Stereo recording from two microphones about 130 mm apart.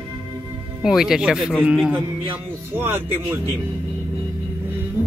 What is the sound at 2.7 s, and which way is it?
Speech, 15° right (ahead or behind).